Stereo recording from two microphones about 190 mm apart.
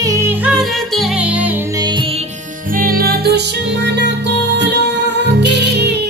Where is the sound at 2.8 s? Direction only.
50° right (ahead or behind).